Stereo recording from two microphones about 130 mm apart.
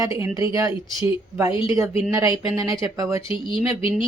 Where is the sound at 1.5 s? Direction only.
40° left (ahead or behind).